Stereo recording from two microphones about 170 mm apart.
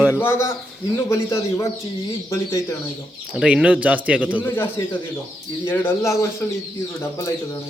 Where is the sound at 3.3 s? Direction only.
5° right (ahead or behind).